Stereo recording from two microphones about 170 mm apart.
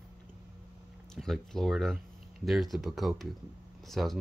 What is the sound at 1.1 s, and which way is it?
Speech, centre (ahead or behind).